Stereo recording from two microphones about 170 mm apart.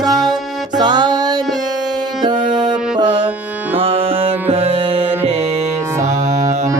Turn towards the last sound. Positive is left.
turn(degrees=-35)  # may be behind; listen again after turning